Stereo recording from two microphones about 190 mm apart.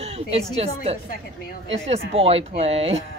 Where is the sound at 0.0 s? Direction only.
30° right (ahead or behind).